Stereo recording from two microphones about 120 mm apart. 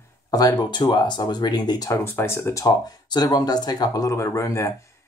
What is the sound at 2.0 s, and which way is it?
Speech, 20° left (ahead or behind).